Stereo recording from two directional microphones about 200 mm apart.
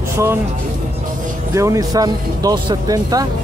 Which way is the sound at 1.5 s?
15° right (ahead or behind).